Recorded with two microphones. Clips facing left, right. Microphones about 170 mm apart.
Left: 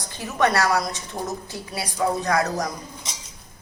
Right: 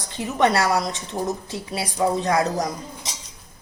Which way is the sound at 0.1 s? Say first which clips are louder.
Right 2 dB; 20° right (ahead or behind).